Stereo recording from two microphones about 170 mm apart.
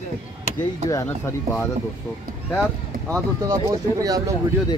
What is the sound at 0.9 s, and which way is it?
Speech, 15° left (ahead or behind).